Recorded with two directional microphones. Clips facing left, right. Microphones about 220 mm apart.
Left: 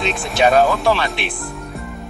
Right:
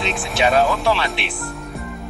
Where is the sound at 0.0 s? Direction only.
Centre (ahead or behind).